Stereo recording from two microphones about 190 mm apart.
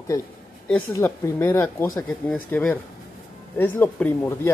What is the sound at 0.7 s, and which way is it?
Speech, 10° left (ahead or behind).